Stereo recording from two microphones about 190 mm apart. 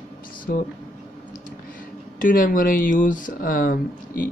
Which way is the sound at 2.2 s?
45° left (ahead or behind).